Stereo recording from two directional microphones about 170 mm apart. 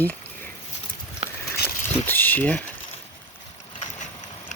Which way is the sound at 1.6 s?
10° left (ahead or behind).